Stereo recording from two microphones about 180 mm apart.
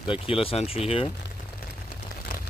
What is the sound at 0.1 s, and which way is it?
Speech, 30° left (ahead or behind).